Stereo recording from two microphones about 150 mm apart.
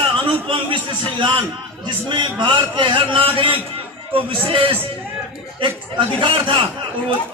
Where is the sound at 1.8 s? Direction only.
30° right (ahead or behind).